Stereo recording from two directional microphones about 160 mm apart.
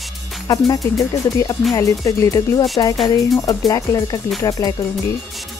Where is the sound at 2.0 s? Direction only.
20° left (ahead or behind).